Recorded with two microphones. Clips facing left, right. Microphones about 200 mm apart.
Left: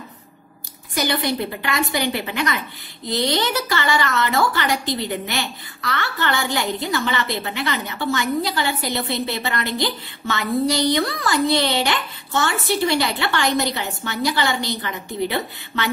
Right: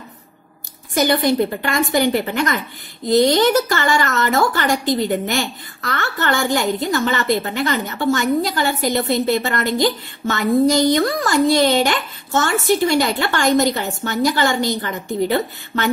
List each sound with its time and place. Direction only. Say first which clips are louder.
0.9 s a woman's voice: right 6 dB; 50° right (ahead or behind)